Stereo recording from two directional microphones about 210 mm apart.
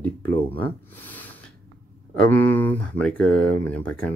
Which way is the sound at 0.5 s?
10° left (ahead or behind).